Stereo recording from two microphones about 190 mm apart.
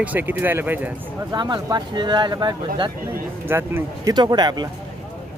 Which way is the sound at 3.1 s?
10° right (ahead or behind).